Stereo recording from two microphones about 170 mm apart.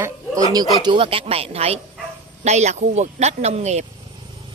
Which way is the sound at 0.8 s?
30° right (ahead or behind).